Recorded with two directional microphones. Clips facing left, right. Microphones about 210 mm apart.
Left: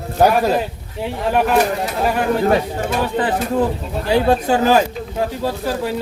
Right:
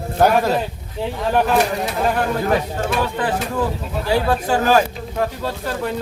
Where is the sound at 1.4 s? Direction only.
5° left (ahead or behind).